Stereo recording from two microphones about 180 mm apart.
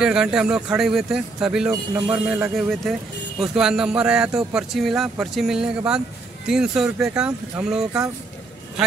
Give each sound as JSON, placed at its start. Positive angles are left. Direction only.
{"t": 0.0, "sound": "speech", "side_deg": -5}
{"t": 1.7, "sound": "speech", "side_deg": -20}